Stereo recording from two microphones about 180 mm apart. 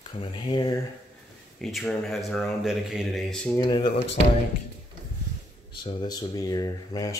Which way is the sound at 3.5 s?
25° left (ahead or behind).